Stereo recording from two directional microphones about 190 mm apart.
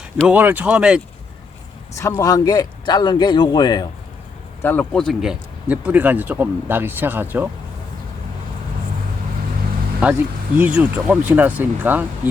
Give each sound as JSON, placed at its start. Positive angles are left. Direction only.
{"t": 0.3, "sound": "speech", "side_deg": -10}
{"t": 2.0, "sound": "speech", "side_deg": 15}
{"t": 4.6, "sound": "speech", "side_deg": 10}
{"t": 10.0, "sound": "speech", "side_deg": -10}